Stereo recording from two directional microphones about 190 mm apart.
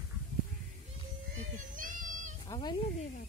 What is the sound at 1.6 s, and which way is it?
Children playing, 45° right (ahead or behind).